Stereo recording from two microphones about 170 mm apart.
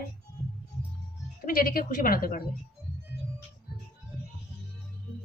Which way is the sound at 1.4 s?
60° left (ahead or behind).